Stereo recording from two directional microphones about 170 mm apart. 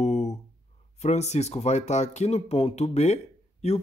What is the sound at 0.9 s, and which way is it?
Speech, 40° left (ahead or behind).